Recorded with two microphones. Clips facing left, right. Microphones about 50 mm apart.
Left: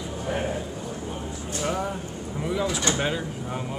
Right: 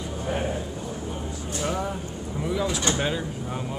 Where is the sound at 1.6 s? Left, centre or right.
Centre.